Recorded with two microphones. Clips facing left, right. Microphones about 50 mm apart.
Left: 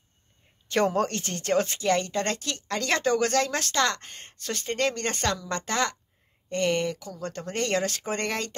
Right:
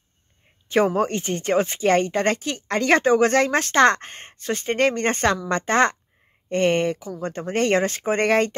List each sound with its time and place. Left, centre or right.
0.7 s speech: centre; by 7.0 s right
7.0 s speech: centre